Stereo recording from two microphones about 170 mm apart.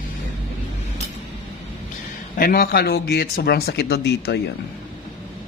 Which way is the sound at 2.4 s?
60° left (ahead or behind).